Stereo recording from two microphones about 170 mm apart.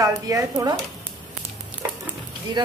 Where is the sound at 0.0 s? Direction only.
20° right (ahead or behind).